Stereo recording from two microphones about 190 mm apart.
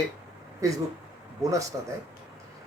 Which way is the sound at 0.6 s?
15° right (ahead or behind).